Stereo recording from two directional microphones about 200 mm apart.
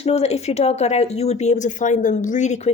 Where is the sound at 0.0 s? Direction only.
30° left (ahead or behind).